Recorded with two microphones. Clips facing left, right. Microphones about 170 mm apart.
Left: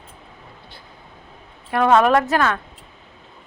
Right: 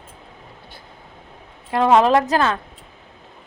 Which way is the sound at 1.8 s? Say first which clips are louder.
Right 1 dB; 25° right (ahead or behind).